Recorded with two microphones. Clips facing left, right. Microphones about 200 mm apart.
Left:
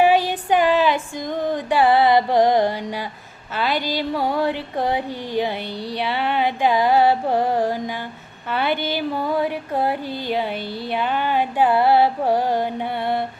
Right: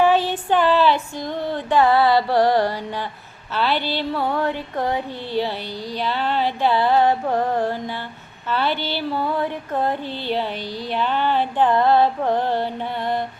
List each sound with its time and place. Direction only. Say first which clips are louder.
0.0 s female singing: left 1 dB; 15° left (ahead or behind)
1.4 s mantra: even; 15° left (ahead or behind)
5.9 s music: even; 65° left (ahead or behind)
6.3 s mantra: left 1 dB; 15° left (ahead or behind)
10.9 s music: even; 10° left (ahead or behind)